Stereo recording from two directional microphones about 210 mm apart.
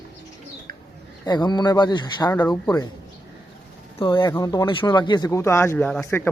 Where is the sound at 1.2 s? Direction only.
20° left (ahead or behind).